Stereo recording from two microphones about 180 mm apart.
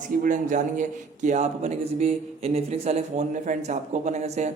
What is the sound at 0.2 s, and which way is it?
A man's voice, 45° right (ahead or behind).